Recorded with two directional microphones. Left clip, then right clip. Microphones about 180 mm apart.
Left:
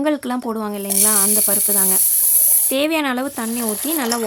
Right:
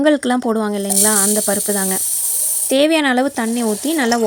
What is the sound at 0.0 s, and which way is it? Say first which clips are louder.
Speech: right 6 dB; 15° right (ahead or behind).